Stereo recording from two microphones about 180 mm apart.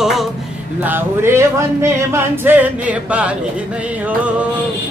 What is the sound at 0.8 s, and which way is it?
Singing, 10° right (ahead or behind).